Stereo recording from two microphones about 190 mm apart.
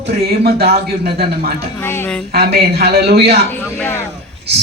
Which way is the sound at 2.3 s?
55° right (ahead or behind).